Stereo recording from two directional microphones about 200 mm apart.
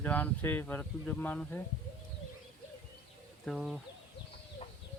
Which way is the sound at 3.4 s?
5° right (ahead or behind).